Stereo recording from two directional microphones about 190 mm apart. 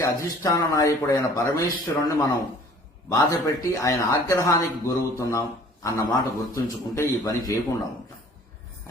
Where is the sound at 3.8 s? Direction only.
15° left (ahead or behind).